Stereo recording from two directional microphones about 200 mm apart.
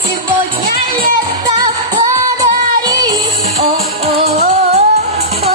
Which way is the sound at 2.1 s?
20° right (ahead or behind).